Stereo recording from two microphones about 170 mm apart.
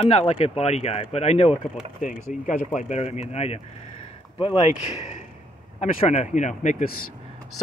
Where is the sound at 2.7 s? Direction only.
40° left (ahead or behind).